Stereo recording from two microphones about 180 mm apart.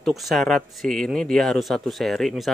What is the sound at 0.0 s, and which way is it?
Speech, centre (ahead or behind).